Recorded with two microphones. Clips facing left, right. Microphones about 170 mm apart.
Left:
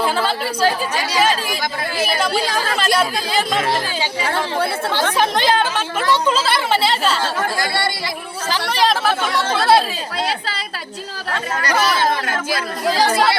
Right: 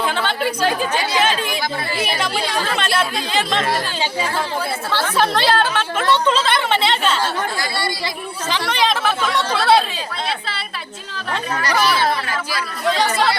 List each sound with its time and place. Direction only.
0.0 s speech: 5° left (ahead or behind)
2.0 s a woman's voice: centre (ahead or behind)
5.1 s a woman's voice: 15° left (ahead or behind)
8.9 s a woman's voice: 5° left (ahead or behind)
12.3 s speech: 50° left (ahead or behind)